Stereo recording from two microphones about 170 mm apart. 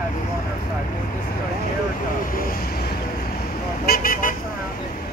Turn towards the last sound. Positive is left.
turn(degrees=55)  # may be behind; listen again after turning